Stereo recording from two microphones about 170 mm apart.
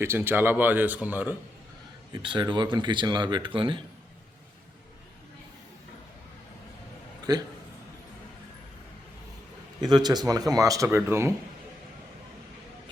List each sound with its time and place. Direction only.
0.0 s speech: 15° right (ahead or behind)
2.2 s speech: 25° right (ahead or behind)
7.3 s speech: 25° right (ahead or behind)
9.8 s speech: 25° right (ahead or behind)